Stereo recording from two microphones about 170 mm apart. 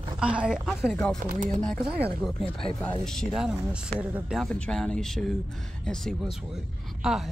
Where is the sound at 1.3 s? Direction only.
50° right (ahead or behind).